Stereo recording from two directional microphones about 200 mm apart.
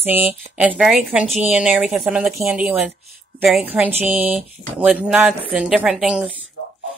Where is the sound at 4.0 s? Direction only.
10° right (ahead or behind).